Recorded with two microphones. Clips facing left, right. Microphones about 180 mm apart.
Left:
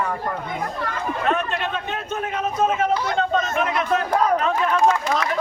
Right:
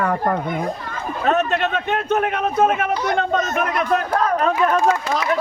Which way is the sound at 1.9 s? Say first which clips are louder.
Right 7 dB; 65° right (ahead or behind).